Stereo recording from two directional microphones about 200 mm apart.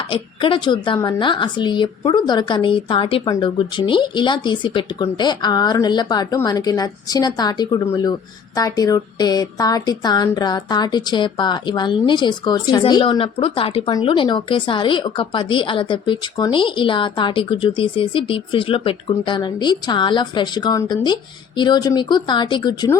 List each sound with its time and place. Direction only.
0.1 s a woman's voice: 25° left (ahead or behind)